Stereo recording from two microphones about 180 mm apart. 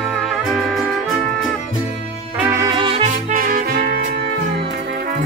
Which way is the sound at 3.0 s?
45° right (ahead or behind).